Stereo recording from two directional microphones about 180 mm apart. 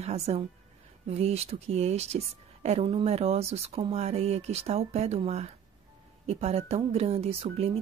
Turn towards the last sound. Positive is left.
turn(degrees=-35)  # may be behind; listen again after turning